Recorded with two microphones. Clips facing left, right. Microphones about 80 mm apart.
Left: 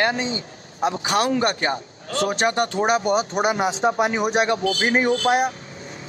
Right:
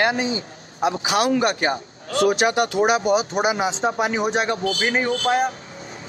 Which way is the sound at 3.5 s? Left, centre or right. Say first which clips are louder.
Left 2 dB; left.